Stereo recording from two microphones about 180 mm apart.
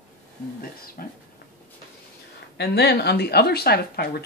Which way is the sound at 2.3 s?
65° left (ahead or behind).